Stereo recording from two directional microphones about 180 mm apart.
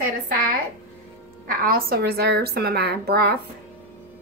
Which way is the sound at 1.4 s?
55° right (ahead or behind).